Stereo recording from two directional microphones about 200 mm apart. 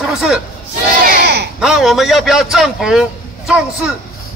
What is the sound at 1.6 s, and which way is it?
Speech, centre (ahead or behind).